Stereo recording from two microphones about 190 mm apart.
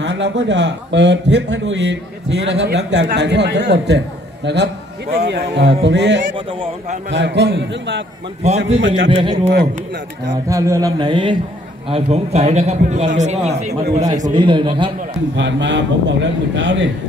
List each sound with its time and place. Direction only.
0.0 s a man's voice: 65° right (ahead or behind)
6.3 s speech: 30° right (ahead or behind)
7.1 s a man's voice: 65° right (ahead or behind)
8.5 s a man's voice: 35° right (ahead or behind)
8.7 s a man's voice: 80° right
9.1 s speech: 25° right (ahead or behind)
10.5 s a man's voice: 15° right (ahead or behind); by 13.7 s 35° right (ahead or behind)
14.2 s speech: 25° right (ahead or behind)
15.3 s a man's voice: 70° right (ahead or behind)